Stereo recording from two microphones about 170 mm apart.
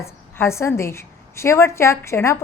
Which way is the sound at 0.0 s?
15° left (ahead or behind).